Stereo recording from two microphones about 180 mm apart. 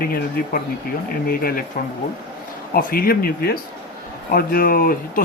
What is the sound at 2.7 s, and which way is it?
Speech, 55° left (ahead or behind).